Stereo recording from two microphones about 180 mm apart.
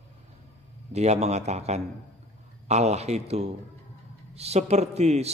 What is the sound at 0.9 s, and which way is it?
Speech, 35° right (ahead or behind).